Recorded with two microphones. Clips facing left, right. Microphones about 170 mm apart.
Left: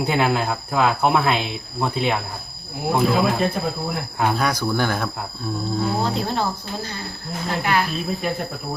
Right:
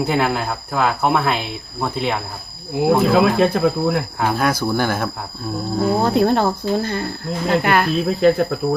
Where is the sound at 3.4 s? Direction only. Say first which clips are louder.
Right 7 dB; 90° right.